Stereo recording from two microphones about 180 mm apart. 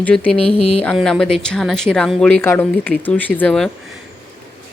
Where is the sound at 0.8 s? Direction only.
5° left (ahead or behind).